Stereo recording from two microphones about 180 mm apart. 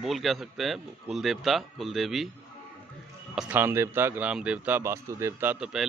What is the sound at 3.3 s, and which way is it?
A man's voice, 5° right (ahead or behind).